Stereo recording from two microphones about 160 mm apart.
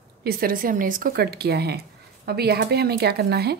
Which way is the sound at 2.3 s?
80° right.